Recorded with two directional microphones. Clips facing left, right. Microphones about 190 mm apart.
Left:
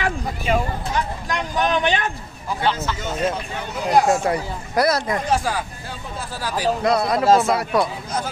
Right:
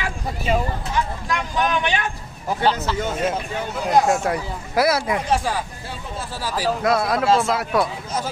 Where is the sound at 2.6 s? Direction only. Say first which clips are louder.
Right 2 dB; 40° right (ahead or behind).